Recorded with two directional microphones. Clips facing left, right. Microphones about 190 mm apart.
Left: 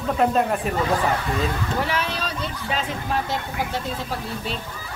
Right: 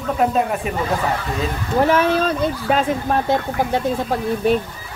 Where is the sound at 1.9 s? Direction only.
50° right (ahead or behind).